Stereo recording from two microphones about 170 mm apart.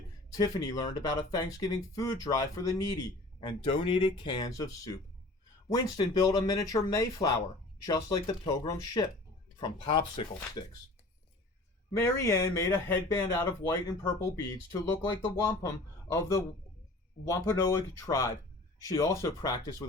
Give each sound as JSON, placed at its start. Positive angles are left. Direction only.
{"t": 0.3, "sound": "speech", "side_deg": 20}
{"t": 11.9, "sound": "speech", "side_deg": 15}